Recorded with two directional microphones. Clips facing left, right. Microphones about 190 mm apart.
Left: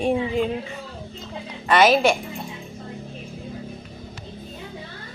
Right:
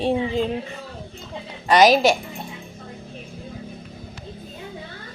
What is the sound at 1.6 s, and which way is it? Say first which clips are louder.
Speech: right 2 dB; 40° right (ahead or behind).